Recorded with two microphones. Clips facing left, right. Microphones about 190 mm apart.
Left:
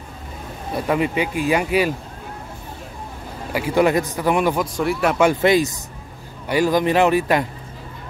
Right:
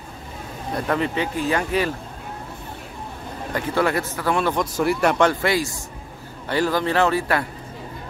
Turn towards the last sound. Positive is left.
turn(degrees=15)  # may be behind; listen again after turning